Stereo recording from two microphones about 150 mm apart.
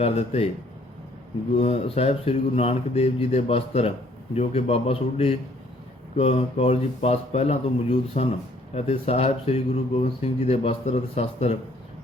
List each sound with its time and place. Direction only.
0.0 s speech: 45° left (ahead or behind)
1.5 s a man's voice: 45° left (ahead or behind)